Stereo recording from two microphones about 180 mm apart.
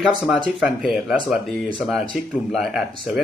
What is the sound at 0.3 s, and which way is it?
Speech, centre (ahead or behind).